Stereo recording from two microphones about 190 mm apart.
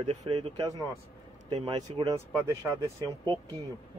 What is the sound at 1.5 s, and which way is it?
Speech, 25° right (ahead or behind).